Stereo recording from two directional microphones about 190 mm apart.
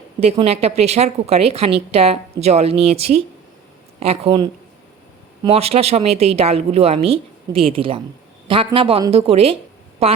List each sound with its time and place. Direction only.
0.2 s a woman's voice: 30° right (ahead or behind)